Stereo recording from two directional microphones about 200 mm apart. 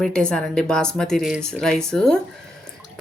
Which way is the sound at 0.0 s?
5° left (ahead or behind).